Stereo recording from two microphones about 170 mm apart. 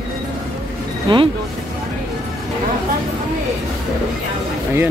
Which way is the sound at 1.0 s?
30° right (ahead or behind).